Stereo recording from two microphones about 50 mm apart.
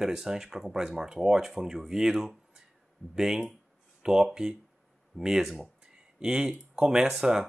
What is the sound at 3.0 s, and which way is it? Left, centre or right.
Speech, left.